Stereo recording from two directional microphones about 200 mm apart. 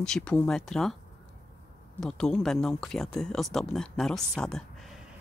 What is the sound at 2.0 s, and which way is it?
Speech, 5° left (ahead or behind).